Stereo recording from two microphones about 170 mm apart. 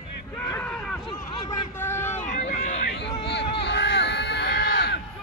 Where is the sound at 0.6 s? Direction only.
5° left (ahead or behind).